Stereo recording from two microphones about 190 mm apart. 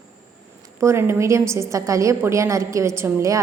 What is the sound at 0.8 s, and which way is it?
A woman's voice, 15° right (ahead or behind).